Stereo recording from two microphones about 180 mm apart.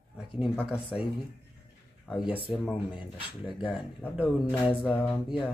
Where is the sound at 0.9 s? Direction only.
5° right (ahead or behind).